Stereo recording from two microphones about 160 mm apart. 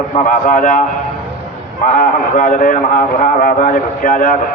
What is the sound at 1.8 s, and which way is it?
A man's voice, 55° left (ahead or behind).